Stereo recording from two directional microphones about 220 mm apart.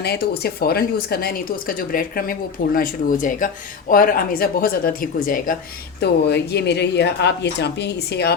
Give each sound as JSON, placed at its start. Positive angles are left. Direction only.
{"t": 0.0, "sound": "speech", "side_deg": 45}